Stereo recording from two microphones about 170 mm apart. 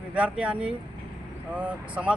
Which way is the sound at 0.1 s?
5° right (ahead or behind).